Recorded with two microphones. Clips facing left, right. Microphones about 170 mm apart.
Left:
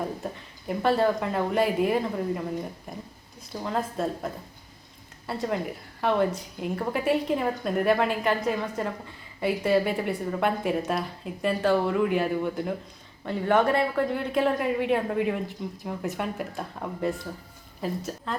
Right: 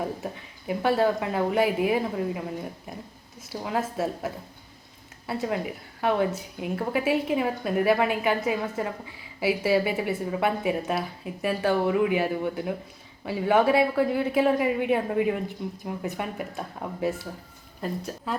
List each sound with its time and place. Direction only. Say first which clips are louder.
0.7 s a woman's voice: even; 5° right (ahead or behind)